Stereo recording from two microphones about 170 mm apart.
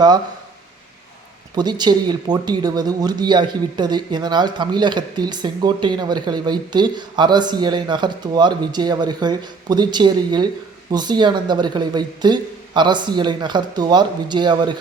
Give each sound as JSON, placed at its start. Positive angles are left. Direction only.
{"t": 1.5, "sound": "speech", "side_deg": -25}